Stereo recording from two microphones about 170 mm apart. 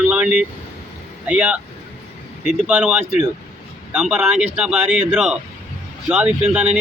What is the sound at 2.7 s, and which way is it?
A man's voice, 10° right (ahead or behind).